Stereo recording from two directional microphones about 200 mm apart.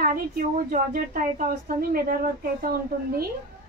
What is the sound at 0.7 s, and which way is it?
A woman's voice, 45° right (ahead or behind).